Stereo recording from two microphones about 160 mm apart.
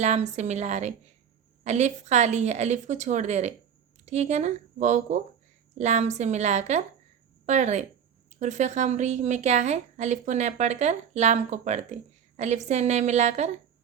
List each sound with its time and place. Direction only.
0.0 s a woman's voice: 45° right (ahead or behind)